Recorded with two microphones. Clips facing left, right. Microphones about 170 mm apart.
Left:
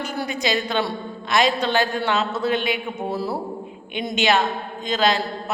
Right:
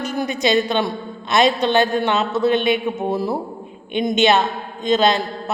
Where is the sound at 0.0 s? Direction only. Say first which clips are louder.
Right 5 dB; 20° right (ahead or behind).